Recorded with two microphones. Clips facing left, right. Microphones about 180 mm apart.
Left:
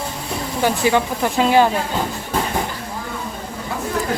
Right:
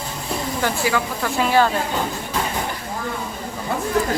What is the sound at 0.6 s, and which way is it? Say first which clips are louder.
Speech: left 6 dB; 20° left (ahead or behind).